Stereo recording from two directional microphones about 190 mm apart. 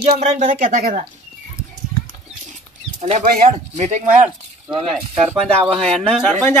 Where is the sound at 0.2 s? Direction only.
40° right (ahead or behind).